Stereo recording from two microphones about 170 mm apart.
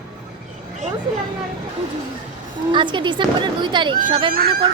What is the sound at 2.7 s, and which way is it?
A woman's voice, 30° right (ahead or behind).